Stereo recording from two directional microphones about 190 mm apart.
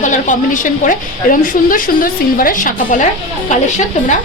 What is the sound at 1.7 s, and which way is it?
A woman's voice, 45° left (ahead or behind).